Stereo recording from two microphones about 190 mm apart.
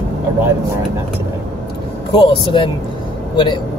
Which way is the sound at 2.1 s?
25° left (ahead or behind).